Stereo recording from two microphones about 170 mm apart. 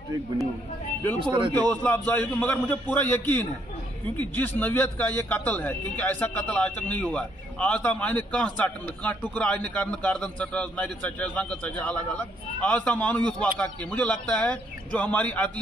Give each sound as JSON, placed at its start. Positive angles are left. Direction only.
{"t": 1.2, "sound": "speech", "side_deg": -30}
{"t": 1.7, "sound": "a man's voice", "side_deg": 10}